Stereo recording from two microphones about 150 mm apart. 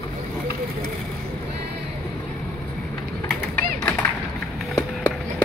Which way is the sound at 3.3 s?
10° left (ahead or behind).